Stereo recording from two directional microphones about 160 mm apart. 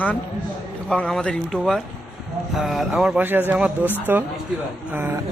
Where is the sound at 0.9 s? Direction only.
5° left (ahead or behind); by 5.2 s 10° right (ahead or behind).